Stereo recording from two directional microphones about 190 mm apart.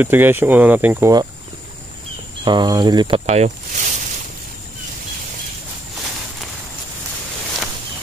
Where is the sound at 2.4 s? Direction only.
20° right (ahead or behind).